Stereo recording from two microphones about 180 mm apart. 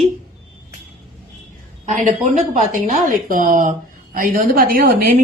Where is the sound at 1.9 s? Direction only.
45° right (ahead or behind).